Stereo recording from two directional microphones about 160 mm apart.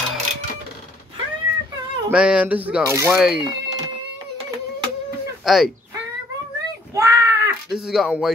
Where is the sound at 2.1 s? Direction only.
5° right (ahead or behind).